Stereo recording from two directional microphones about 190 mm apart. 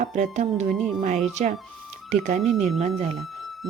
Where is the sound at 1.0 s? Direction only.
40° right (ahead or behind).